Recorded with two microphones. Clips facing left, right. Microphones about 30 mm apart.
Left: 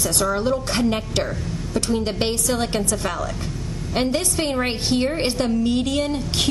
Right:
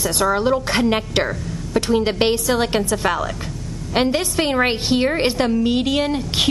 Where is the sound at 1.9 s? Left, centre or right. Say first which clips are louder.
Right 7 dB; right.